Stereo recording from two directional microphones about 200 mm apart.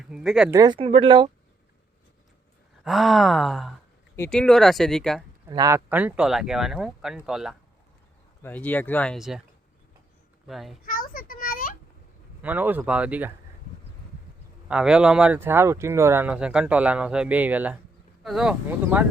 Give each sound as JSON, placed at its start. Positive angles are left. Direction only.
{"t": 0.0, "sound": "speech", "side_deg": -5}
{"t": 0.5, "sound": "speech", "side_deg": -20}
{"t": 2.8, "sound": "speech", "side_deg": 0}
{"t": 5.5, "sound": "speech", "side_deg": -20}
{"t": 8.4, "sound": "speech", "side_deg": 10}
{"t": 10.4, "sound": "speech", "side_deg": 0}
{"t": 10.8, "sound": "a sound", "side_deg": 45}
{"t": 12.4, "sound": "speech", "side_deg": -10}
{"t": 14.7, "sound": "speech", "side_deg": -5}